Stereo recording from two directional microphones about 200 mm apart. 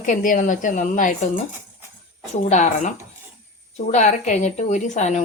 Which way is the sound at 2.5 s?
35° left (ahead or behind).